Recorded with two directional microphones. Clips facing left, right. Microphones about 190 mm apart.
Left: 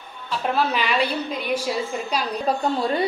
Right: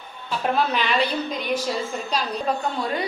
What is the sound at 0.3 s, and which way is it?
A woman's voice, centre (ahead or behind).